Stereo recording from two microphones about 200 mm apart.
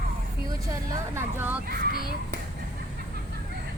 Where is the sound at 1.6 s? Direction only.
50° right (ahead or behind).